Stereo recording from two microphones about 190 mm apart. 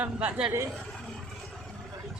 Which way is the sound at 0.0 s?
5° right (ahead or behind).